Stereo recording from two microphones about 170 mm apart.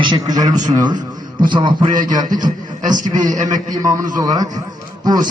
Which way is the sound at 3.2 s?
50° right (ahead or behind).